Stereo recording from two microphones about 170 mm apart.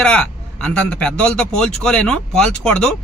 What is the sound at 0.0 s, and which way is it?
A man's voice, 5° left (ahead or behind).